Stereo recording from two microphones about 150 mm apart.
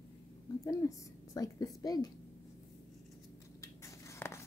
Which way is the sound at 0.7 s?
20° left (ahead or behind).